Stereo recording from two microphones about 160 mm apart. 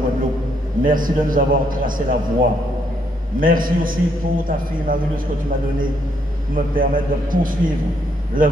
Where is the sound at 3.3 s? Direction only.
60° right (ahead or behind).